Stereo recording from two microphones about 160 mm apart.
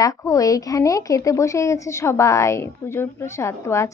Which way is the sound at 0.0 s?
20° left (ahead or behind).